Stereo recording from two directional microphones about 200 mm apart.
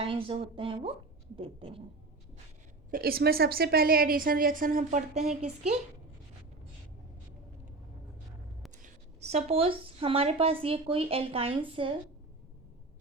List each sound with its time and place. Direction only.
0.0 s speech: 25° right (ahead or behind)
2.9 s a woman's voice: 50° right (ahead or behind)
8.8 s speech: 35° right (ahead or behind)